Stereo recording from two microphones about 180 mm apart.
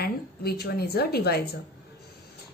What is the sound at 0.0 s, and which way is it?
A woman's voice, 60° left (ahead or behind).